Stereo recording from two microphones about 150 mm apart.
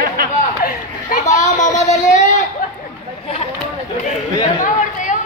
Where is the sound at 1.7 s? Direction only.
20° left (ahead or behind).